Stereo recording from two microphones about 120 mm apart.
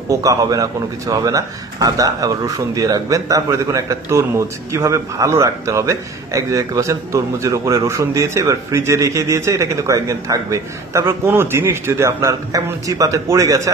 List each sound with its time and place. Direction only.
0.1 s speech: 30° right (ahead or behind)